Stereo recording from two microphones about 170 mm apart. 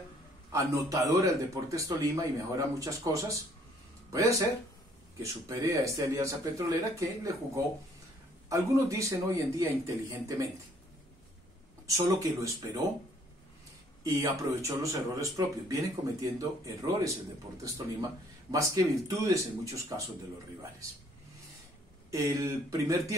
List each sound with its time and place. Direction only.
0.5 s speech: 20° right (ahead or behind)
11.8 s speech: 20° right (ahead or behind)
14.0 s speech: 20° right (ahead or behind)
18.5 s speech: 20° right (ahead or behind)
22.1 s speech: 20° right (ahead or behind)